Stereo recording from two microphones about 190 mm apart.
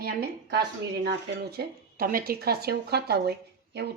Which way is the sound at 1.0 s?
55° right (ahead or behind).